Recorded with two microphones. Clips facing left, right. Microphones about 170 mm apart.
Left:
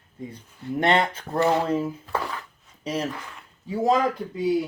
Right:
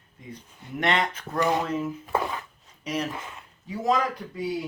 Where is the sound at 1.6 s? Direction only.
30° left (ahead or behind).